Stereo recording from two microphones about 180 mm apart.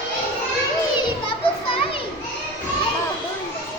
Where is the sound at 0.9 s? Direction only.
25° left (ahead or behind).